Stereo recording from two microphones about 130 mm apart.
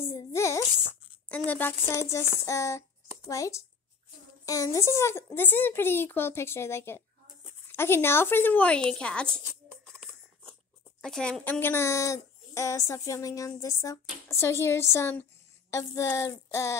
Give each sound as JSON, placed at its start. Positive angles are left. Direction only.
{"t": 0.0, "sound": "a sound", "side_deg": 20}
{"t": 1.5, "sound": "a woman's voice", "side_deg": 15}
{"t": 11.0, "sound": "speech", "side_deg": 5}
{"t": 11.6, "sound": "speech", "side_deg": 20}